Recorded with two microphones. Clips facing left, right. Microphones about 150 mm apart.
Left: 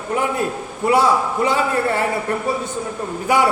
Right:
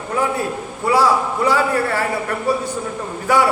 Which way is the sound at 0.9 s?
20° left (ahead or behind).